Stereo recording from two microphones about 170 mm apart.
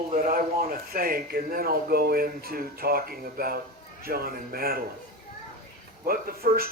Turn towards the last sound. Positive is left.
turn(degrees=-60)  # may be behind; listen again after turning